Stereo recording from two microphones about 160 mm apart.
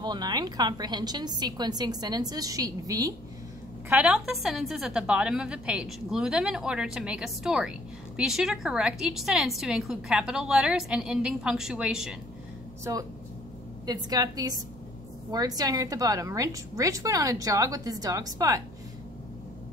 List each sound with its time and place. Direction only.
0.0 s a woman's voice: 25° right (ahead or behind)
3.9 s a woman's voice: 5° right (ahead or behind)
13.8 s a woman's voice: 25° right (ahead or behind)